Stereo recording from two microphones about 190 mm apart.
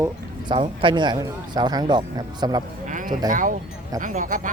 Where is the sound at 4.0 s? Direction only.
45° right (ahead or behind).